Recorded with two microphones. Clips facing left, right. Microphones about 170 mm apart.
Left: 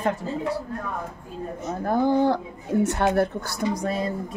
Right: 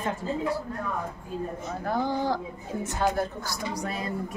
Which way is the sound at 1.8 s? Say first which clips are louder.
Left 7 dB; 55° left (ahead or behind).